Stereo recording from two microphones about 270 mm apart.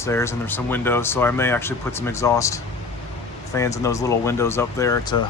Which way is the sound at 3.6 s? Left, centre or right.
Centre.